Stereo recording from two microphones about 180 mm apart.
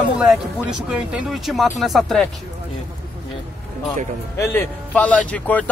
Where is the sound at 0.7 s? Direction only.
5° right (ahead or behind).